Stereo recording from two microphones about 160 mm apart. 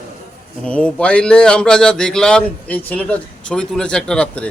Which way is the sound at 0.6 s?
5° left (ahead or behind).